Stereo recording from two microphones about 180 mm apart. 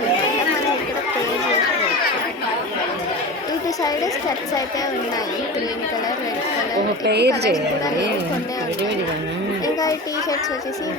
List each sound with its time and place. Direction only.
7.1 s a woman's voice: 65° right (ahead or behind)